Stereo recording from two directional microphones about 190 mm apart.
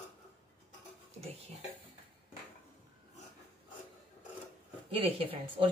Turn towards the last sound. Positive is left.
turn(degrees=-30)  # may be behind; listen again after turning